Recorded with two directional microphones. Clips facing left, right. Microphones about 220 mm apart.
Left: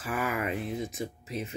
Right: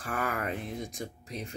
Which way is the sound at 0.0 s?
5° left (ahead or behind).